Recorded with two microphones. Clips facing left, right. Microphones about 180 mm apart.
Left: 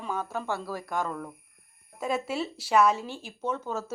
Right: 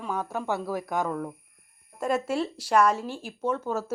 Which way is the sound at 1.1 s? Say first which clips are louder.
Right 5 dB; 5° right (ahead or behind).